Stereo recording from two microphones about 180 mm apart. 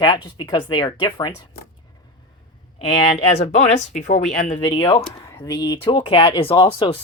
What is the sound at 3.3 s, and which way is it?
Speech, 40° left (ahead or behind).